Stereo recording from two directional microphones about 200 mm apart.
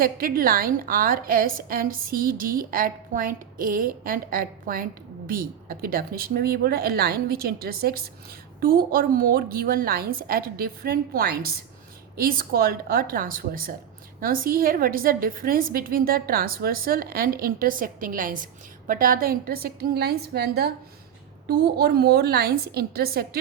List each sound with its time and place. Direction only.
0.0 s a woman's voice: 45° right (ahead or behind)